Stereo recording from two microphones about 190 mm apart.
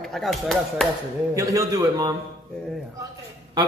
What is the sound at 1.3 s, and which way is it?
Speech, 15° right (ahead or behind).